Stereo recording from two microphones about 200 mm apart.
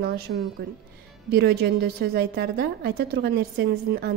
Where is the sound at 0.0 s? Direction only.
50° right (ahead or behind).